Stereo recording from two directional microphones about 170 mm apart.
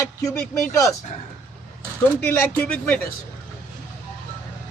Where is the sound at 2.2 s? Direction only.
10° left (ahead or behind).